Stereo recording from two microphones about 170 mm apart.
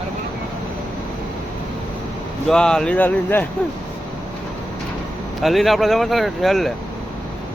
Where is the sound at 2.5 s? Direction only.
5° left (ahead or behind).